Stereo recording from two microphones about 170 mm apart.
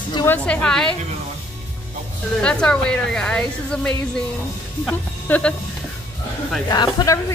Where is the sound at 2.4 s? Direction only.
5° left (ahead or behind).